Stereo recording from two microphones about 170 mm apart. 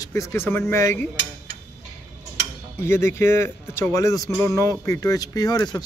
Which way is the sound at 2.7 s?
15° left (ahead or behind).